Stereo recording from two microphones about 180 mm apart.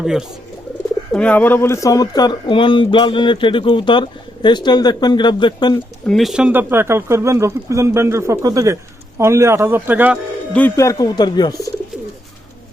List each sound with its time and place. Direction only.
0.0 s speech: 5° right (ahead or behind)
1.1 s speech: 5° left (ahead or behind); by 5.7 s 25° left (ahead or behind)
6.1 s speech: centre (ahead or behind)
10.5 s speech: 15° left (ahead or behind)